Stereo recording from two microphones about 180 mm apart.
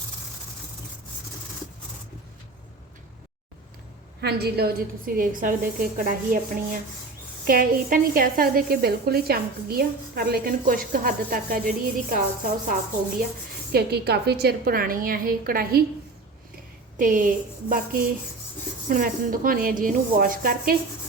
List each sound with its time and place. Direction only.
4.2 s a woman's voice: 65° right (ahead or behind)
13.7 s a woman's voice: 65° right (ahead or behind)
17.0 s a woman's voice: 50° right (ahead or behind)